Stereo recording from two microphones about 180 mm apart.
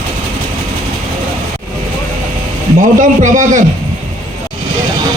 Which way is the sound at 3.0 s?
45° right (ahead or behind).